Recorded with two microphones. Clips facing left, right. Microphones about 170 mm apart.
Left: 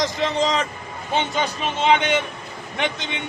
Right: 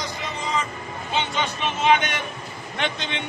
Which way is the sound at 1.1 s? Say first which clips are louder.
Left 3 dB; 45° left (ahead or behind).